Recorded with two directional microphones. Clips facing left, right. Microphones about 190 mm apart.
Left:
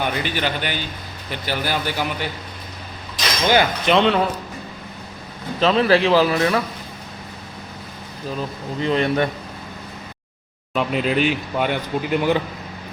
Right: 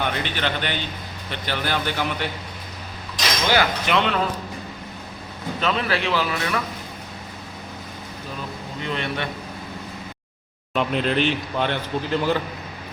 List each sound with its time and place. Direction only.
0.0 s speech: 5° left (ahead or behind)
3.5 s speech: 20° left (ahead or behind)
5.5 s a man's voice: 35° left (ahead or behind)
8.8 s a man's voice: 35° left (ahead or behind)
10.8 s speech: 5° left (ahead or behind)